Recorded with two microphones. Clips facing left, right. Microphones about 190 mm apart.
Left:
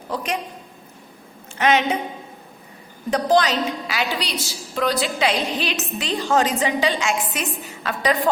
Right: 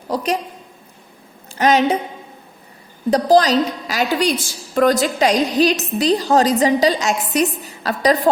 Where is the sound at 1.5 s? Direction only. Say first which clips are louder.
Right 4 dB; 40° right (ahead or behind).